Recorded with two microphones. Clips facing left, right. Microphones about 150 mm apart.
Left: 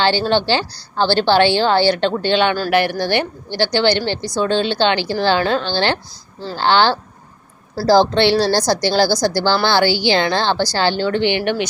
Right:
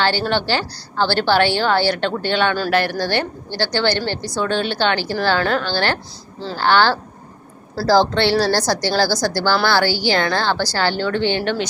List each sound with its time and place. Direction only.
0.0 s a woman's voice: 20° left (ahead or behind)